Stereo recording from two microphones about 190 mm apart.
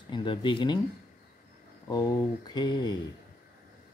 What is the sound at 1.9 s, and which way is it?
Speech, 20° left (ahead or behind).